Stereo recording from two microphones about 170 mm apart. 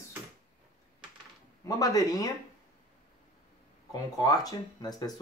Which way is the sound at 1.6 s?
20° left (ahead or behind).